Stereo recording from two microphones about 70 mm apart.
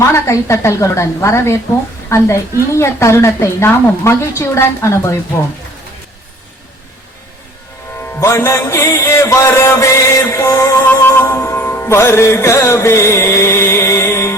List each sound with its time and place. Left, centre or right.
0.0 s a woman's voice: left
8.2 s a woman's voice: left
10.8 s music: left